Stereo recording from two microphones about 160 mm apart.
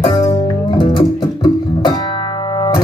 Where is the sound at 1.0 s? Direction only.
30° left (ahead or behind).